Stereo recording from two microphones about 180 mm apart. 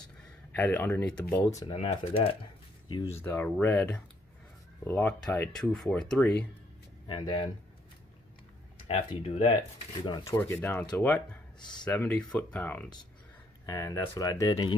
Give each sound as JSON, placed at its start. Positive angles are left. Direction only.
{"t": 0.6, "sound": "speech", "side_deg": 10}
{"t": 1.4, "sound": "speech", "side_deg": 25}
{"t": 3.0, "sound": "speech", "side_deg": 10}
{"t": 7.1, "sound": "speech", "side_deg": 25}
{"t": 8.8, "sound": "speech", "side_deg": 35}
{"t": 10.3, "sound": "speech", "side_deg": 10}